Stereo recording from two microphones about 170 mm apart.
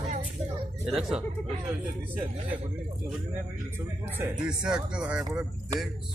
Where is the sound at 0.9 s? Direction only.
5° right (ahead or behind).